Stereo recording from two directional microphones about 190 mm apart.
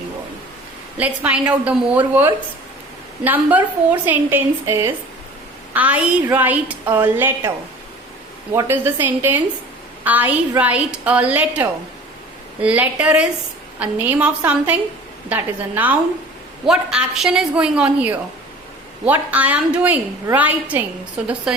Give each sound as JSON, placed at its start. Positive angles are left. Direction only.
{"t": 0.9, "sound": "a woman's voice", "side_deg": -5}
{"t": 8.5, "sound": "a woman's voice", "side_deg": -10}